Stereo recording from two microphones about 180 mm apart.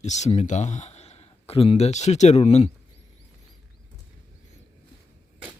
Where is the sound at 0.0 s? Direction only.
40° left (ahead or behind).